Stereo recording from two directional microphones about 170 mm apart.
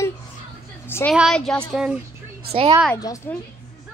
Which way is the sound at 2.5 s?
35° right (ahead or behind).